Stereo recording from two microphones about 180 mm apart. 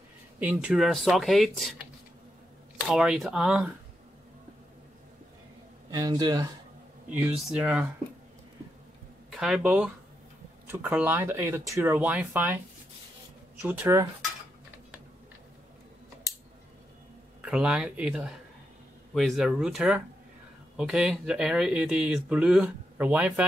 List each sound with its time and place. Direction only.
0.4 s speech: 10° right (ahead or behind)
2.9 s speech: centre (ahead or behind)
5.9 s speech: 20° right (ahead or behind)
7.1 s speech: 10° right (ahead or behind)
9.3 s speech: centre (ahead or behind)
17.4 s speech: 5° right (ahead or behind)